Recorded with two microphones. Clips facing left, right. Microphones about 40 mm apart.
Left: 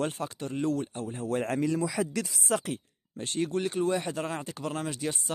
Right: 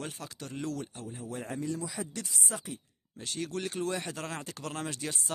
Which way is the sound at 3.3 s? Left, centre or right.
Centre.